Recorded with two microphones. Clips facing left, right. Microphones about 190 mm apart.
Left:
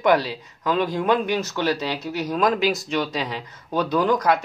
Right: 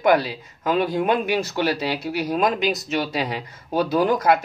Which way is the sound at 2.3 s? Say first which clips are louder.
Left 1 dB; 25° right (ahead or behind).